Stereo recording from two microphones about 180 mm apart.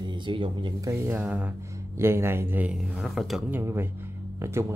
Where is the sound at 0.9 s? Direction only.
10° right (ahead or behind).